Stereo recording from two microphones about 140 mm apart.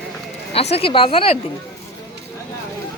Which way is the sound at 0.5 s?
45° left (ahead or behind).